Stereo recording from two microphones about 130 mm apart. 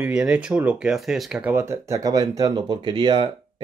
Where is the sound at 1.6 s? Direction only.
20° right (ahead or behind).